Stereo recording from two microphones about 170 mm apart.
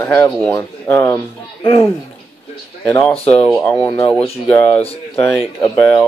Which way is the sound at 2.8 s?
10° left (ahead or behind).